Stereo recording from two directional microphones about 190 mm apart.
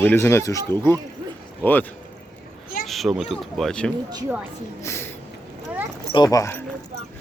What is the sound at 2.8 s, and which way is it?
Speech, centre (ahead or behind).